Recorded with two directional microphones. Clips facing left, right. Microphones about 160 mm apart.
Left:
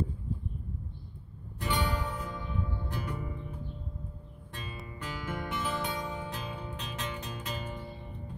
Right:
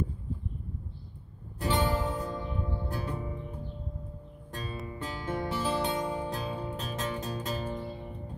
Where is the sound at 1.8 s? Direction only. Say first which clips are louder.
Right 6 dB; 40° right (ahead or behind).